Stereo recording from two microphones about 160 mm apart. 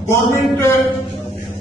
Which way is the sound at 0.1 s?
15° left (ahead or behind).